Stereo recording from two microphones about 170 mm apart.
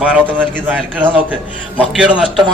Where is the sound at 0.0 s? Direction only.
10° right (ahead or behind).